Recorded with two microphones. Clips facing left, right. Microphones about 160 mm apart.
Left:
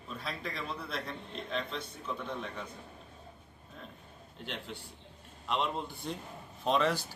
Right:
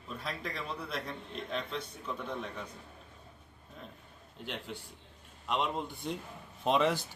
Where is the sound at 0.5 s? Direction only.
10° right (ahead or behind).